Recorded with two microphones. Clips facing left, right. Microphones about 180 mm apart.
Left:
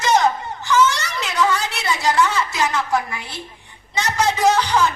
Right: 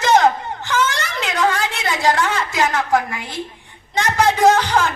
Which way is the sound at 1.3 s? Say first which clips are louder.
Right 1 dB; 55° right (ahead or behind).